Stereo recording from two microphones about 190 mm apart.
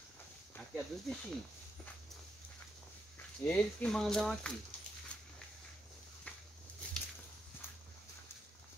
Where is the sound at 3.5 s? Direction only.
5° left (ahead or behind).